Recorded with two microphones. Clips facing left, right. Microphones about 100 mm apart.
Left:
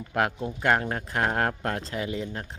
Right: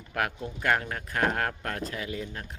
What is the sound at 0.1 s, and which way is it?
Speech, 25° left (ahead or behind).